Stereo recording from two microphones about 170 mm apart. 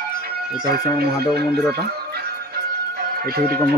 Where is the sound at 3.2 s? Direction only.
65° right (ahead or behind).